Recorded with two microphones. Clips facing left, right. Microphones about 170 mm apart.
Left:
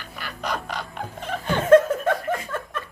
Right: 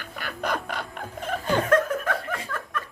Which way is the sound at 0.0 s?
50° right (ahead or behind).